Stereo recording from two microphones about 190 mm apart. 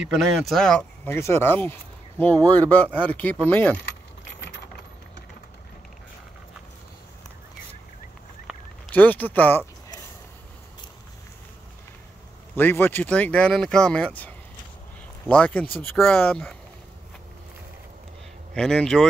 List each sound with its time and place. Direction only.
0.0 s speech: 5° right (ahead or behind)
2.3 s speech: 20° right (ahead or behind)
2.7 s speech: 10° left (ahead or behind)
8.9 s speech: 10° left (ahead or behind)
12.5 s speech: 10° left (ahead or behind)
18.5 s speech: 5° left (ahead or behind)